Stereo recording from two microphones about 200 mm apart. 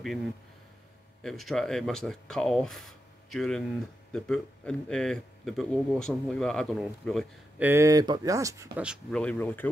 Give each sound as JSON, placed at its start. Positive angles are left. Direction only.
{"t": 1.2, "sound": "a man's voice", "side_deg": 0}
{"t": 7.6, "sound": "speech", "side_deg": -15}
{"t": 8.8, "sound": "a man's voice", "side_deg": -5}
{"t": 9.2, "sound": "speech", "side_deg": 10}